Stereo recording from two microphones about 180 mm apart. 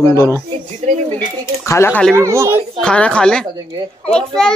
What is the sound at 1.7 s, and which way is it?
Speech, 15° left (ahead or behind).